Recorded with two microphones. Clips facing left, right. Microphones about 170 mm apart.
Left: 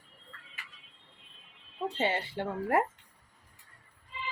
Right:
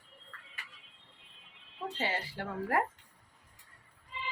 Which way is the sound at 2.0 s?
25° left (ahead or behind).